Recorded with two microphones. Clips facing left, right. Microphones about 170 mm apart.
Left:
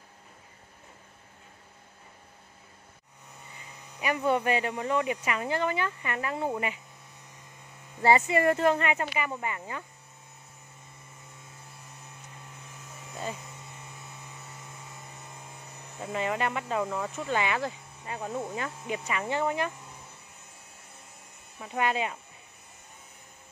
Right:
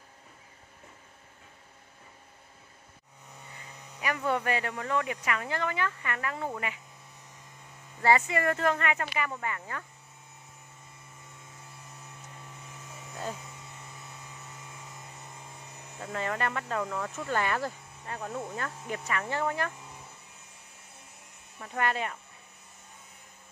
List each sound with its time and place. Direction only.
4.0 s speech: 20° left (ahead or behind)
8.0 s speech: 25° left (ahead or behind)
13.1 s hum: 5° left (ahead or behind)
16.0 s speech: 10° left (ahead or behind)
21.5 s speech: 10° left (ahead or behind)